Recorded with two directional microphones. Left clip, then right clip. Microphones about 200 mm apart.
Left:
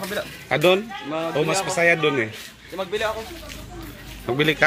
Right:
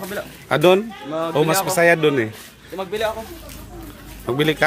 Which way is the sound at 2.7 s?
65° right (ahead or behind).